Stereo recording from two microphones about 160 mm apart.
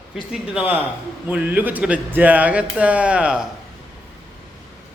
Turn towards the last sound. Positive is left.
turn(degrees=-5)  # may be behind; listen again after turning